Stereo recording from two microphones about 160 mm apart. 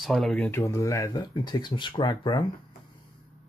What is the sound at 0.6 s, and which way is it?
Speech, 20° left (ahead or behind).